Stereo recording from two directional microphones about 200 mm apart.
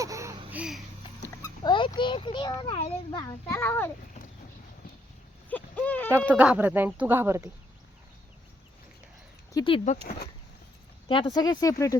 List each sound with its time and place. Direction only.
0.0 s a sound: 15° right (ahead or behind)
1.2 s a child's voice: 15° left (ahead or behind)
3.4 s a child's voice: 10° left (ahead or behind)
5.5 s speech: 10° left (ahead or behind)
6.2 s speech: 5° right (ahead or behind)
9.5 s speech: 20° left (ahead or behind)
11.1 s speech: 25° left (ahead or behind)